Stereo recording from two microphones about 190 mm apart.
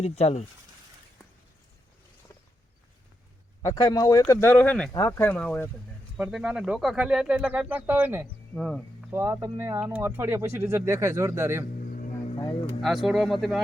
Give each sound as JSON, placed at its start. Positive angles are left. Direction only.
{"t": 0.0, "sound": "speech", "side_deg": 35}
{"t": 3.6, "sound": "speech", "side_deg": 20}
{"t": 6.1, "sound": "speech", "side_deg": -5}
{"t": 8.5, "sound": "speech", "side_deg": 5}
{"t": 9.1, "sound": "speech", "side_deg": -15}
{"t": 11.8, "sound": "vehicle", "side_deg": 45}
{"t": 12.8, "sound": "speech", "side_deg": 0}